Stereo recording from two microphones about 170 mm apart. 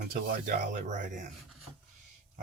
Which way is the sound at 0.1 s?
50° right (ahead or behind).